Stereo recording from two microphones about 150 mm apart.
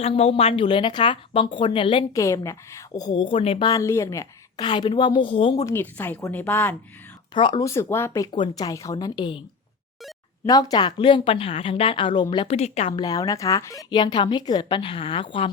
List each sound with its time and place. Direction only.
0.0 s speech: 40° left (ahead or behind)
2.1 s a woman's voice: 20° left (ahead or behind); by 3.7 s 40° left (ahead or behind)
3.7 s a woman's voice: 20° left (ahead or behind); by 5.6 s 35° left (ahead or behind)
5.6 s speech: 15° left (ahead or behind)
7.3 s speech: 30° left (ahead or behind)
7.6 s a woman's voice: 20° left (ahead or behind)
10.4 s speech: 25° left (ahead or behind)
12.5 s a woman's voice: 45° left (ahead or behind)
13.0 s speech: 25° left (ahead or behind)